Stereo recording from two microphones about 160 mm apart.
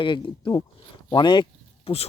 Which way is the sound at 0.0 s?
30° left (ahead or behind).